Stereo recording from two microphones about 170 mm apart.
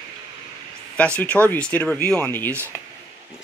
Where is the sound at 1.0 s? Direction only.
10° left (ahead or behind).